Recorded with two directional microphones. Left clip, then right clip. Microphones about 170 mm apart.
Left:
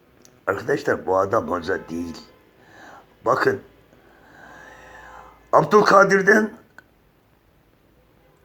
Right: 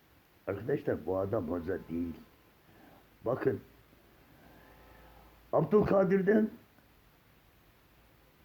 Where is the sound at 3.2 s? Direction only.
20° right (ahead or behind).